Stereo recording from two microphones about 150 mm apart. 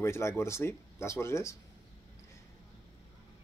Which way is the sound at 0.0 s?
20° left (ahead or behind).